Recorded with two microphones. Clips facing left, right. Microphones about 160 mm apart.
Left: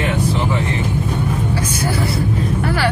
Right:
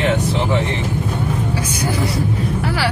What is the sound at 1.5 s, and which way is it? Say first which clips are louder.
Speech: even; 10° right (ahead or behind).